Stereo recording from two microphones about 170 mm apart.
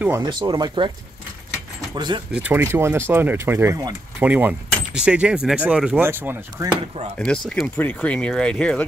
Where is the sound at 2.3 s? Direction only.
10° right (ahead or behind).